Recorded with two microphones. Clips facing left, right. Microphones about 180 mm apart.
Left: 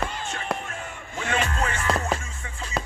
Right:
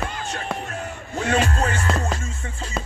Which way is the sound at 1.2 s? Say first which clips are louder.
Right 5 dB; 35° right (ahead or behind).